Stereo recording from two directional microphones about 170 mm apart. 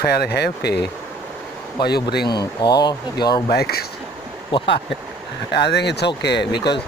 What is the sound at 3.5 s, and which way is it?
Speech, 65° left (ahead or behind).